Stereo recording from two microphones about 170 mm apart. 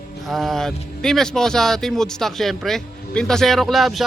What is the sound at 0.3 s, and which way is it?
Speech, centre (ahead or behind).